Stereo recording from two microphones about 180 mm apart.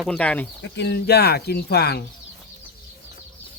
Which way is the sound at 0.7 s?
65° left (ahead or behind).